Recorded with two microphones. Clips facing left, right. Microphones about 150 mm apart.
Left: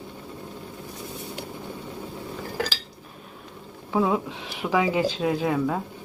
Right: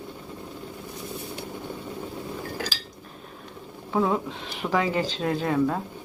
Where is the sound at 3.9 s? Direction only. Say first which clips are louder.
Left 1 dB; 5° left (ahead or behind).